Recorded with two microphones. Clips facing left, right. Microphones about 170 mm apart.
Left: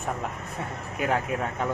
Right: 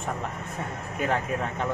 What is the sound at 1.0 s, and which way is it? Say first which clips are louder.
Speech: left 1 dB; 5° left (ahead or behind).